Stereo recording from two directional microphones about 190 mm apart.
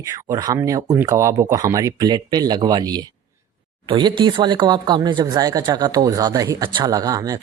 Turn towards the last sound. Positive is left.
turn(degrees=-20)  # may be behind; listen again after turning